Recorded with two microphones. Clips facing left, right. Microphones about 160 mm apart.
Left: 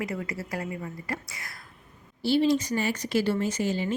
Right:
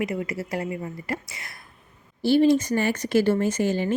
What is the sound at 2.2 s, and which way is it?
Speech, 50° right (ahead or behind).